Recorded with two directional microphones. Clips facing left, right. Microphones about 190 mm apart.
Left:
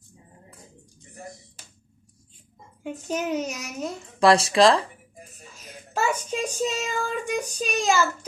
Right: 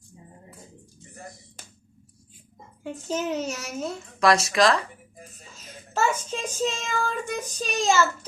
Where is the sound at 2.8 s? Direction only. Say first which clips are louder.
Even; 15° left (ahead or behind).